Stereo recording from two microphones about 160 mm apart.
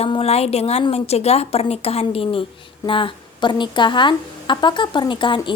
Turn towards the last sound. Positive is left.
turn(degrees=30)  # may be behind; listen again after turning